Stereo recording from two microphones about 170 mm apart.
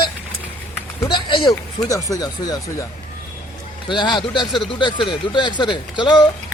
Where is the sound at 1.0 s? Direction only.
30° left (ahead or behind).